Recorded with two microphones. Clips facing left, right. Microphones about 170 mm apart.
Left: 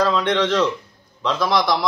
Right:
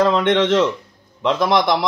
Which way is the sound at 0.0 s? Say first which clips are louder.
Right 3 dB; 50° right (ahead or behind).